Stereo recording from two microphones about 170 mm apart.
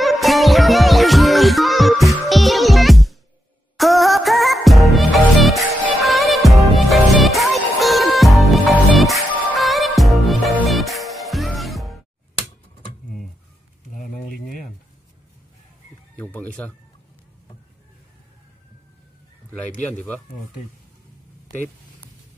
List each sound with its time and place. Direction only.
0.0 s music: centre (ahead or behind)
13.9 s a sound: 55° left (ahead or behind)
16.2 s music: 10° left (ahead or behind)